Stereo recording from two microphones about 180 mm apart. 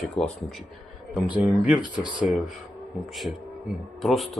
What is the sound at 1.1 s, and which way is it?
Speech, 10° right (ahead or behind).